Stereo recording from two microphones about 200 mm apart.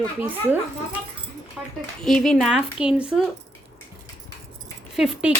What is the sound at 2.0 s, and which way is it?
A woman's voice, centre (ahead or behind).